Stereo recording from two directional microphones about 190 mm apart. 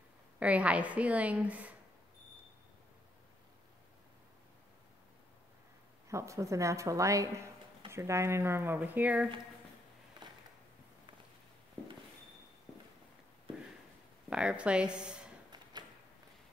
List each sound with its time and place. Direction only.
0.4 s a woman's voice: 5° right (ahead or behind)
6.0 s a woman's voice: 15° right (ahead or behind)
14.3 s speech: 5° right (ahead or behind)